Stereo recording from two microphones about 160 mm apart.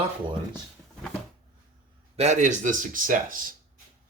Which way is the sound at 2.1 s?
45° right (ahead or behind).